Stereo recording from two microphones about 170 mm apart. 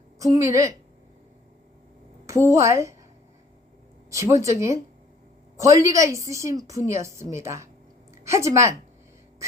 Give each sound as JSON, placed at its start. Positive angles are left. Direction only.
{"t": 0.2, "sound": "a woman's voice", "side_deg": -20}
{"t": 2.2, "sound": "a woman's voice", "side_deg": -15}
{"t": 4.1, "sound": "a woman's voice", "side_deg": -15}